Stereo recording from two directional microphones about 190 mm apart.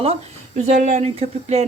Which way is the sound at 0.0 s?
35° right (ahead or behind).